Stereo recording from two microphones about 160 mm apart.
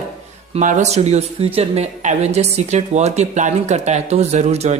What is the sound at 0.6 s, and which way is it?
Speech, 50° right (ahead or behind).